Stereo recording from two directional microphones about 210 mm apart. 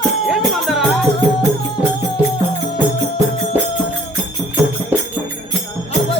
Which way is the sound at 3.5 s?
10° right (ahead or behind).